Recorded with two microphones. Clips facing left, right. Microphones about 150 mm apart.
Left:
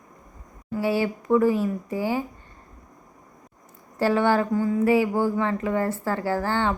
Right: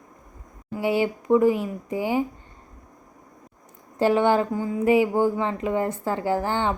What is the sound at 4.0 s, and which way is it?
Speech, 20° right (ahead or behind).